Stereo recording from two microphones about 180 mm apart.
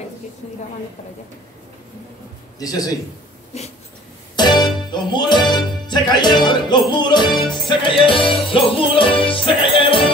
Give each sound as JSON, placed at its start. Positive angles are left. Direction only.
{"t": 2.6, "sound": "music", "side_deg": 20}
{"t": 3.5, "sound": "a sound", "side_deg": 35}
{"t": 4.4, "sound": "music", "side_deg": 25}